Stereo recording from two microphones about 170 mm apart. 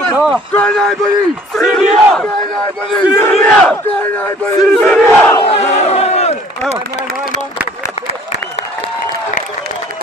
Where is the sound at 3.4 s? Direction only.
10° left (ahead or behind).